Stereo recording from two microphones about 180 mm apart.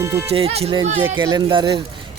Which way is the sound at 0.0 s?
15° right (ahead or behind).